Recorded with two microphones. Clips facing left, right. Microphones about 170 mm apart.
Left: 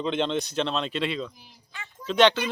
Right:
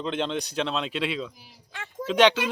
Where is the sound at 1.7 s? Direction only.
90° right.